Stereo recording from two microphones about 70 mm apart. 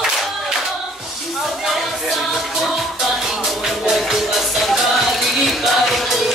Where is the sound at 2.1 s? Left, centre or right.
Centre.